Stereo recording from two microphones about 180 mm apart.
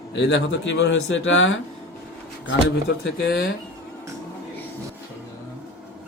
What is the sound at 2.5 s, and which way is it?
Speech, 65° left (ahead or behind).